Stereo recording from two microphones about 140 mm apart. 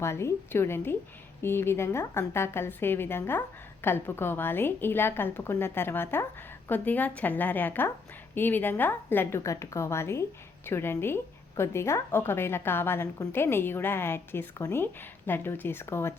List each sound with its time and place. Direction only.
0.0 s a woman's voice: 20° left (ahead or behind)